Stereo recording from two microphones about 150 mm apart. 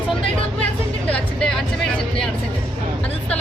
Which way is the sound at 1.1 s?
5° left (ahead or behind).